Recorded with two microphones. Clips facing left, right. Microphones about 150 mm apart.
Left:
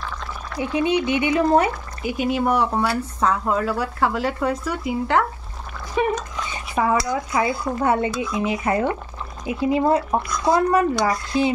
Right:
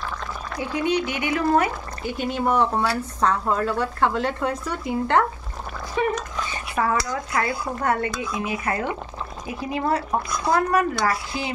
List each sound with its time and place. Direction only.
0.6 s speech: 20° left (ahead or behind)
2.0 s speech: 10° left (ahead or behind)
6.0 s speech: 15° left (ahead or behind)
8.2 s speech: 20° right (ahead or behind)
8.5 s speech: 20° left (ahead or behind)